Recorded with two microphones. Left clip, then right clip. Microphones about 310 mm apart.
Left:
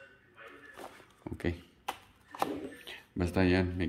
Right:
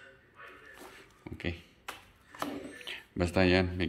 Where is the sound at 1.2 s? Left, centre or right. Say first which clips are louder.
Left 2 dB; centre.